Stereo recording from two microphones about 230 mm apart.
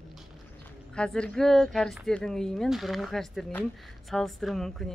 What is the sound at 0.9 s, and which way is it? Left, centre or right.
Speech, centre.